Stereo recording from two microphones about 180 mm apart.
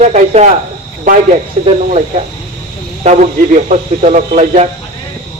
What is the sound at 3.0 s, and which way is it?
A man's voice, 40° right (ahead or behind).